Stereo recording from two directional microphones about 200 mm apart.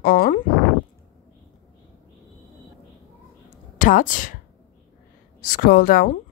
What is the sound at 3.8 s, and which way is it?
Speech, 40° left (ahead or behind).